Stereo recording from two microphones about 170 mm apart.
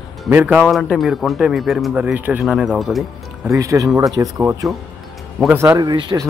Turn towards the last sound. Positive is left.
turn(degrees=-25)  # may be behind; listen again after turning